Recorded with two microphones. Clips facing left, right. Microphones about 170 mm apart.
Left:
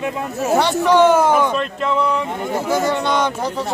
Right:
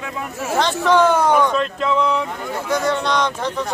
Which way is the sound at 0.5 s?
10° left (ahead or behind).